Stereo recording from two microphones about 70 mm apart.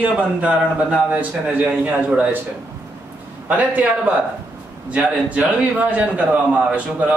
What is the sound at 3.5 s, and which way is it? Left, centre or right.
A man's voice, right.